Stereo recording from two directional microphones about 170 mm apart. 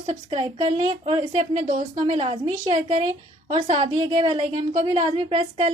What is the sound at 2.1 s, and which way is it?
A woman's voice, 30° right (ahead or behind).